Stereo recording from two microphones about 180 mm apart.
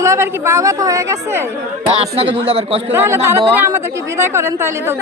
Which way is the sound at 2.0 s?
35° right (ahead or behind).